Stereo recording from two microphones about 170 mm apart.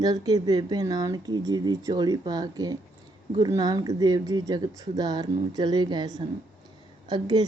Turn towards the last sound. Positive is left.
turn(degrees=-25)  # may be behind; listen again after turning